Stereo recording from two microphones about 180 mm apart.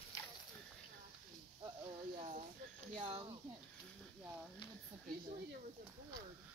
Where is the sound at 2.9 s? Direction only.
30° right (ahead or behind).